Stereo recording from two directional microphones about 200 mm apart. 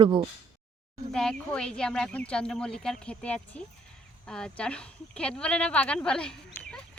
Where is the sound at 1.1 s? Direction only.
5° left (ahead or behind).